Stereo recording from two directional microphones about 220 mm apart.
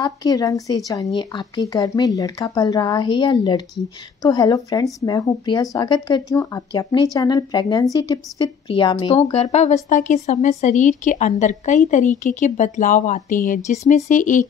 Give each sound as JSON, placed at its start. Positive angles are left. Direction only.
{"t": 0.0, "sound": "a woman's voice", "side_deg": 15}